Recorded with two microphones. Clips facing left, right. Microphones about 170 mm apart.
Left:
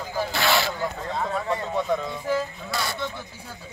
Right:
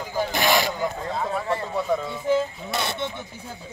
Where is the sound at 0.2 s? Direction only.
15° right (ahead or behind).